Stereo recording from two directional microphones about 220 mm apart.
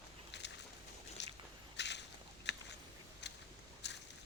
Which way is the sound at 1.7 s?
50° left (ahead or behind).